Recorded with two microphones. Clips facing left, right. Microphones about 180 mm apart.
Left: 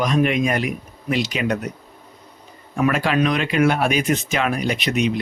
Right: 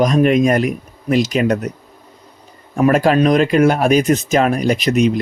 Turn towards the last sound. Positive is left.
turn(degrees=-40)  # may be behind; listen again after turning